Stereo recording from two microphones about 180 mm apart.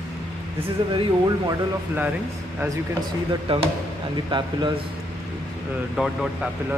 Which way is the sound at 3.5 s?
30° right (ahead or behind).